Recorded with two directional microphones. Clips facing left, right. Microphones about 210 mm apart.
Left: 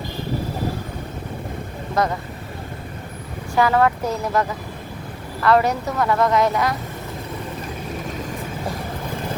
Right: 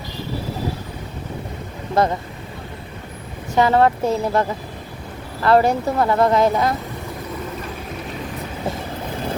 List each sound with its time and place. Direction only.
2.0 s speech: 30° right (ahead or behind)
3.5 s speech: 25° right (ahead or behind)